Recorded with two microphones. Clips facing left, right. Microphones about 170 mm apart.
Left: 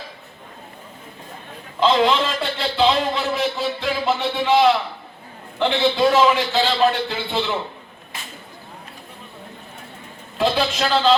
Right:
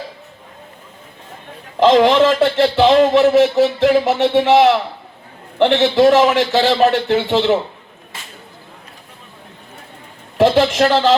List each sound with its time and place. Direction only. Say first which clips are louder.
1.8 s a man's voice: right 7 dB; 75° right (ahead or behind)
10.3 s a man's voice: right 8 dB; 80° right